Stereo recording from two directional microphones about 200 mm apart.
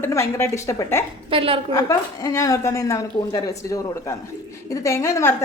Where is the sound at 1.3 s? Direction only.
25° right (ahead or behind).